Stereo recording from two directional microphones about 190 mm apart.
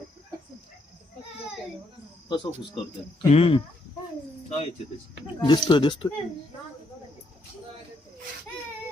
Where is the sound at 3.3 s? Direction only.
30° left (ahead or behind).